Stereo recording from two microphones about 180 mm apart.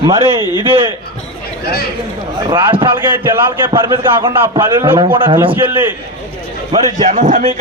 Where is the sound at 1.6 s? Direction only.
60° left (ahead or behind).